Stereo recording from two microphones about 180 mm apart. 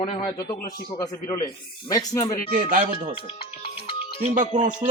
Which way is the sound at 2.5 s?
50° right (ahead or behind).